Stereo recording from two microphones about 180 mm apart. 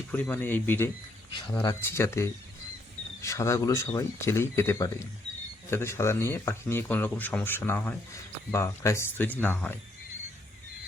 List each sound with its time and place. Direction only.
0.1 s speech: 10° left (ahead or behind)